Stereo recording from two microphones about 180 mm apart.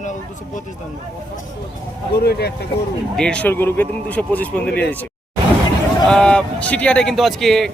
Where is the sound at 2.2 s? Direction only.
65° left (ahead or behind).